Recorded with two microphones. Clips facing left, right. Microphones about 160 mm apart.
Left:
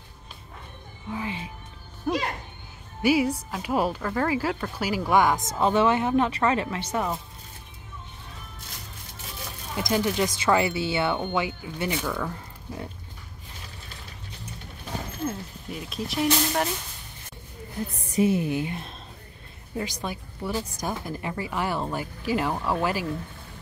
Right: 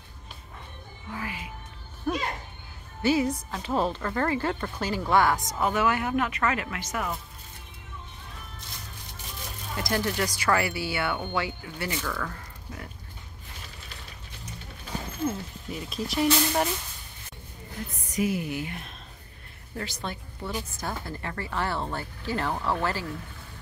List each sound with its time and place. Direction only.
1.1 s music: 25° left (ahead or behind)
2.1 s music: 15° left (ahead or behind)
3.0 s speech: 10° left (ahead or behind); by 7.2 s 30° left (ahead or behind)
9.8 s speech: 20° left (ahead or behind)
15.2 s speech: centre (ahead or behind)
17.9 s speech: 30° left (ahead or behind); by 23.0 s 15° left (ahead or behind)